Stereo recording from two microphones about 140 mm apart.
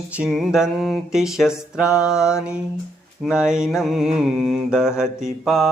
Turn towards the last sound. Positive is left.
turn(degrees=0)  # may be behind; listen again after turning